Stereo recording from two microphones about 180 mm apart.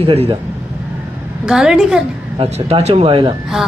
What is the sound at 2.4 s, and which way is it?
Speech, 35° right (ahead or behind).